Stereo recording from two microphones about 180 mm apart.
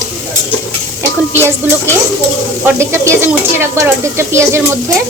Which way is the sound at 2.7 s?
15° right (ahead or behind).